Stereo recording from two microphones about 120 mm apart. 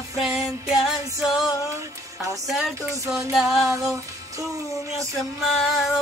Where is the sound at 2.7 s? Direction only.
25° right (ahead or behind).